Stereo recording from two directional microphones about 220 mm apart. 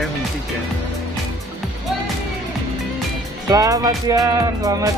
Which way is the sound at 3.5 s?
15° right (ahead or behind).